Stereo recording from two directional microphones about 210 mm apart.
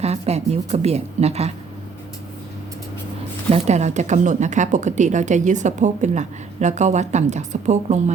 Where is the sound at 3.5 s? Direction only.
30° right (ahead or behind).